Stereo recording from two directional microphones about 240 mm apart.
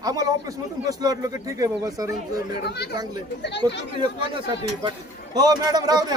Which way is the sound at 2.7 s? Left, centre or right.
Left.